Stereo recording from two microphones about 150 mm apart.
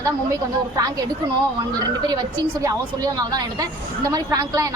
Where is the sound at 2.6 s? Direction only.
25° right (ahead or behind).